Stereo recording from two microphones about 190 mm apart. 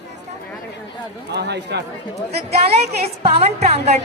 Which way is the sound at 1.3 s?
60° right (ahead or behind).